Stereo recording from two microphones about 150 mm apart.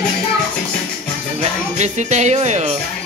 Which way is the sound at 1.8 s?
50° right (ahead or behind).